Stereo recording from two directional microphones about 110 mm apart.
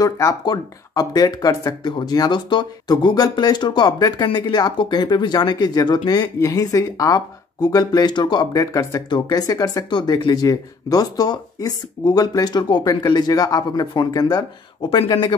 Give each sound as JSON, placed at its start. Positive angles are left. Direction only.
{"t": 0.0, "sound": "speech", "side_deg": 35}